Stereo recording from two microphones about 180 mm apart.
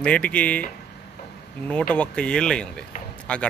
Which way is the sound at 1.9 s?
5° left (ahead or behind).